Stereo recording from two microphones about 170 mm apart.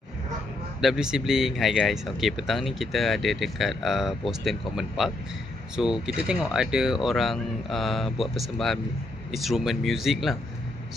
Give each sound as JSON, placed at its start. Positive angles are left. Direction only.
{"t": 0.7, "sound": "speech", "side_deg": -5}